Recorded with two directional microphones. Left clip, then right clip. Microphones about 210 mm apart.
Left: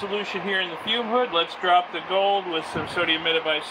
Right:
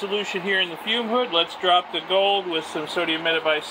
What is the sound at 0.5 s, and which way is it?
Speech, 30° right (ahead or behind).